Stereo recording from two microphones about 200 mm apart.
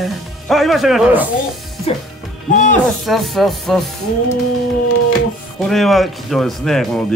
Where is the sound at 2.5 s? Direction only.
40° left (ahead or behind).